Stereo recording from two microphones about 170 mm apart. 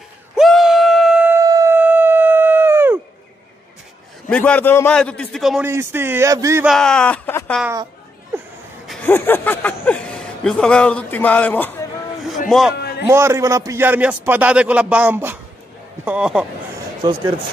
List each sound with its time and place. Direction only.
0.4 s a sound: centre (ahead or behind)
1.4 s howl: 20° right (ahead or behind)
4.3 s speech: 5° left (ahead or behind)
5.7 s a man's voice: 15° right (ahead or behind)
6.6 s speech: centre (ahead or behind)
8.3 s a sound: 15° right (ahead or behind)
9.0 s a man's voice: 10° left (ahead or behind)
12.7 s a sound: 75° left (ahead or behind)
13.1 s a man's voice: 15° right (ahead or behind)
17.0 s speech: 25° right (ahead or behind)